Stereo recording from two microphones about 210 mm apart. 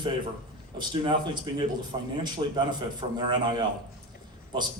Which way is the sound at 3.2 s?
20° right (ahead or behind).